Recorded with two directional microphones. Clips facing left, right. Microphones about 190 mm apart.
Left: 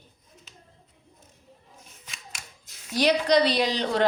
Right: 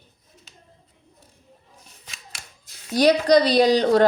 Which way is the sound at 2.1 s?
35° right (ahead or behind).